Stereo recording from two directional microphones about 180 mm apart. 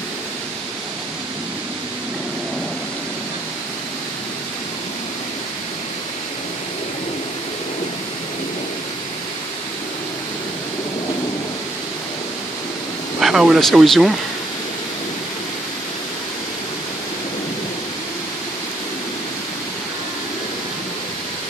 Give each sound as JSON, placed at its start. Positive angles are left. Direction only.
{"t": 13.2, "sound": "speech", "side_deg": 0}